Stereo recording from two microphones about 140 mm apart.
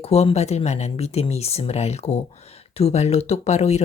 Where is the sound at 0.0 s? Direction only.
45° left (ahead or behind).